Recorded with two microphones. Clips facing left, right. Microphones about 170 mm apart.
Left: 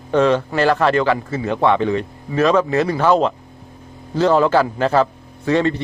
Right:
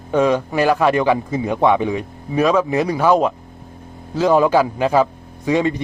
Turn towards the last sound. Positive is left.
turn(degrees=-10)  # may be behind; listen again after turning